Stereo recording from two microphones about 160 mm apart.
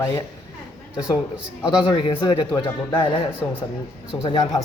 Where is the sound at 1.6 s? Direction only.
30° left (ahead or behind).